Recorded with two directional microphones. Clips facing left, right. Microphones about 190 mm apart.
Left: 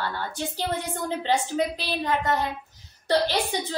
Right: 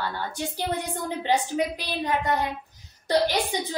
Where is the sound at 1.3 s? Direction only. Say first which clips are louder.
Right 1 dB; 15° right (ahead or behind).